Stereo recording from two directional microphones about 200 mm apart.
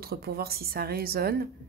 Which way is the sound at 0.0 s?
50° right (ahead or behind).